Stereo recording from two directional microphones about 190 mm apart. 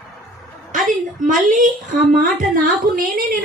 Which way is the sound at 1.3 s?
45° right (ahead or behind).